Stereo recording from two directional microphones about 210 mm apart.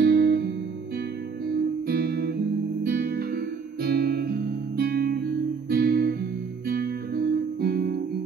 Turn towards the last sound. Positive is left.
turn(degrees=-45)  # may be behind; listen again after turning